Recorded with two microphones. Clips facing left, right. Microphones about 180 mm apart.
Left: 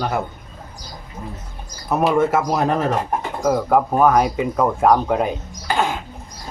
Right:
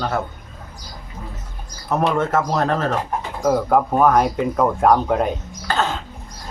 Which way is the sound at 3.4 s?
Centre (ahead or behind).